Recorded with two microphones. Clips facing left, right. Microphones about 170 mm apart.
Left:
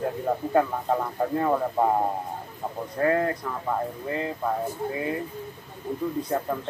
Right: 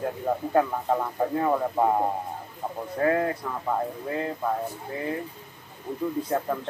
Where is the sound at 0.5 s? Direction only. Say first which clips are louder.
Even; centre (ahead or behind).